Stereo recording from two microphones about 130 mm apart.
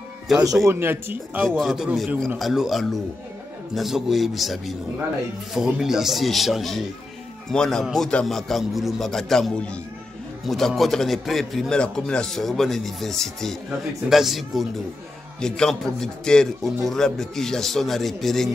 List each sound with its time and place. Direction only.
0.3 s a man's voice: centre (ahead or behind)
0.7 s speech: 15° right (ahead or behind)
1.6 s a man's voice: centre (ahead or behind)